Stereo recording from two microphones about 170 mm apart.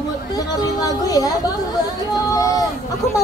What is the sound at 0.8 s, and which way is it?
Speech, 20° left (ahead or behind).